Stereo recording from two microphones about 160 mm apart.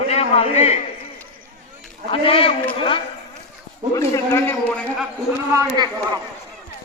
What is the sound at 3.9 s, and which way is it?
Speech, 20° left (ahead or behind).